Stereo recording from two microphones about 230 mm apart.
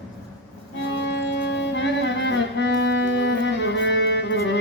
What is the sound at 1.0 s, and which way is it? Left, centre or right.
Music, left.